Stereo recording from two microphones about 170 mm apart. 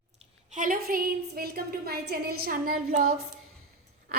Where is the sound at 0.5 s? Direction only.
55° right (ahead or behind).